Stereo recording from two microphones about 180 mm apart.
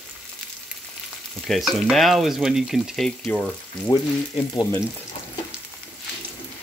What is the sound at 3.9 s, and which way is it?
Frying, 25° left (ahead or behind).